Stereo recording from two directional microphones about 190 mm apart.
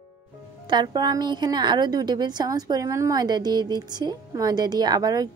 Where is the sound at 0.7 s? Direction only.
20° right (ahead or behind).